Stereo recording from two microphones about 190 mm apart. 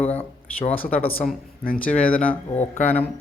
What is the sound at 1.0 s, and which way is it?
Speech, 50° left (ahead or behind).